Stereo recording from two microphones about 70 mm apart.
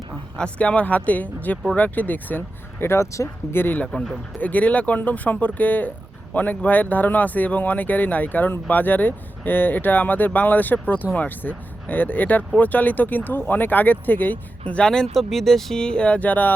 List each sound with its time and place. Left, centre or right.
0.3 s speech: centre; by 3.3 s left
3.5 s speech: left
3.9 s speech: centre
4.4 s speech: left